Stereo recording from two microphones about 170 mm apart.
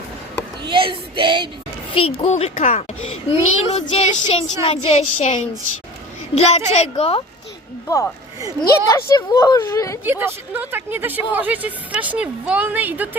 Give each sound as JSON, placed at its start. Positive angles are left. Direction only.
{"t": 0.6, "sound": "speech", "side_deg": -30}
{"t": 1.9, "sound": "a child's voice", "side_deg": 35}
{"t": 7.9, "sound": "speech", "side_deg": 15}
{"t": 10.0, "sound": "speech", "side_deg": -10}